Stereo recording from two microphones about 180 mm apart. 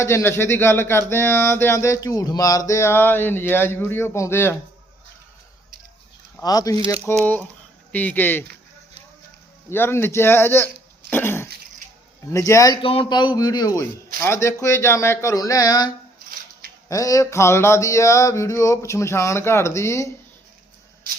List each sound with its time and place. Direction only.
0.0 s speech: 15° left (ahead or behind)
6.4 s a man's voice: 20° left (ahead or behind)
6.7 s speech: 30° right (ahead or behind)
7.9 s speech: 10° left (ahead or behind)
9.6 s speech: 15° left (ahead or behind)
11.1 s cough: 10° left (ahead or behind)
12.3 s a man's voice: 20° left (ahead or behind)
16.9 s speech: 20° left (ahead or behind)